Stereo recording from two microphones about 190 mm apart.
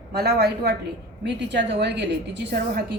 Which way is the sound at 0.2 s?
60° right (ahead or behind).